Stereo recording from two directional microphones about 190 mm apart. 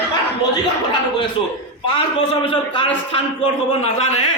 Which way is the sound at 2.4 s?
30° left (ahead or behind).